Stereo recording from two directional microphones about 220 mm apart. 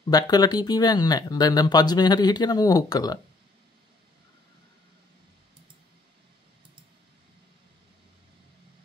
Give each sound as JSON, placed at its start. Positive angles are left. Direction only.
{"t": 0.1, "sound": "speech", "side_deg": 15}